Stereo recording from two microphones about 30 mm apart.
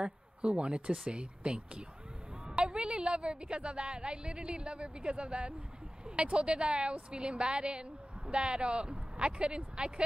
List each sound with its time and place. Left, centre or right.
0.0 s speech: right